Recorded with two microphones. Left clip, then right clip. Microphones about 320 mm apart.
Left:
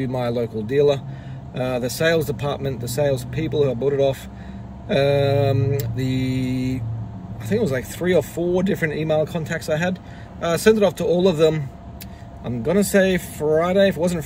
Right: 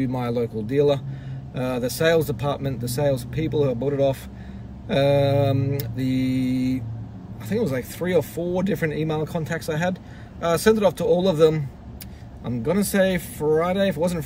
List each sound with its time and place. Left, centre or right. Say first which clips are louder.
0.0 s speech: left 2 dB; centre